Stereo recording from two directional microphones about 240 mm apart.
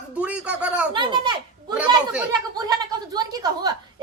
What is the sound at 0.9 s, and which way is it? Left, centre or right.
Speech, centre.